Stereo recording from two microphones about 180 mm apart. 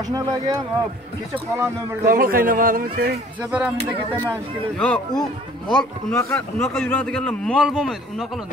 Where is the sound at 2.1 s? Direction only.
50° right (ahead or behind).